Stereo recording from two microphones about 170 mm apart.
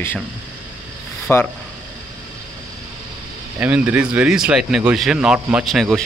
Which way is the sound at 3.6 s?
10° right (ahead or behind).